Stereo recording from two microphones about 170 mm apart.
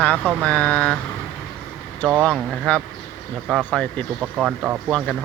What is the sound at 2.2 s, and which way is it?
Speech, 5° left (ahead or behind).